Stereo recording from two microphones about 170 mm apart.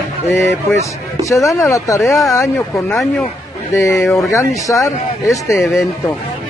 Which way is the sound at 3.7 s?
15° left (ahead or behind).